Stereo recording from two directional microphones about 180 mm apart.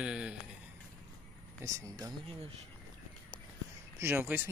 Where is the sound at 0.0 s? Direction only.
5° right (ahead or behind).